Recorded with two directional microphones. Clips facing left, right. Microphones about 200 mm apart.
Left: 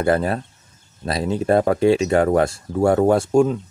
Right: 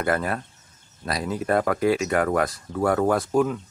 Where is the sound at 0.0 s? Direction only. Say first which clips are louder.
Left 6 dB; 30° left (ahead or behind).